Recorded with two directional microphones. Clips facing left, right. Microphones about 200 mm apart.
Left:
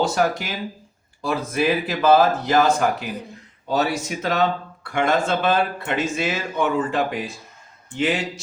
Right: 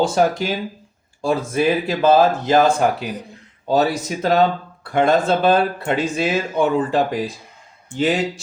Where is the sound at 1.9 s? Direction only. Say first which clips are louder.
Right 1 dB; 25° right (ahead or behind).